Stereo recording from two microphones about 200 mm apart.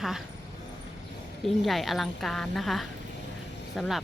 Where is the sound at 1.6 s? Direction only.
Centre (ahead or behind).